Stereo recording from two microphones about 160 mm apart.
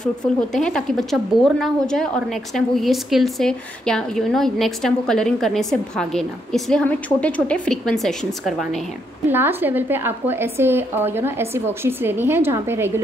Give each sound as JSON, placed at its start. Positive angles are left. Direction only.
{"t": 0.5, "sound": "a woman's voice", "side_deg": 5}
{"t": 9.3, "sound": "a woman's voice", "side_deg": -15}